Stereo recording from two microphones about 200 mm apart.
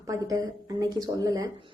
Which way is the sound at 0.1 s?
15° right (ahead or behind).